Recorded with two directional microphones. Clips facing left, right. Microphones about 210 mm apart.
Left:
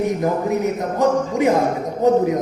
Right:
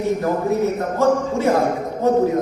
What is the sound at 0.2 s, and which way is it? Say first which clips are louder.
Speech: even; 15° left (ahead or behind).